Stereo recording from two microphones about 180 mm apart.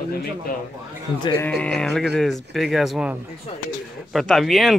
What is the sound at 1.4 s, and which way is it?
Speech, 5° left (ahead or behind).